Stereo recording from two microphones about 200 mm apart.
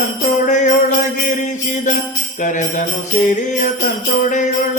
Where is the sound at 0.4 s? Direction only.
35° left (ahead or behind).